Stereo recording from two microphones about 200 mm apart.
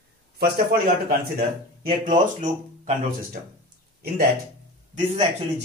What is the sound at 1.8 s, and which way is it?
Speech, 40° right (ahead or behind).